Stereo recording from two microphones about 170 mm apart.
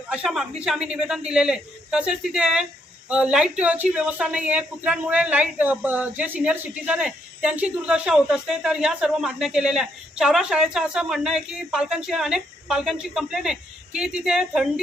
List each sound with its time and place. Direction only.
0.1 s a man's voice: 5° right (ahead or behind)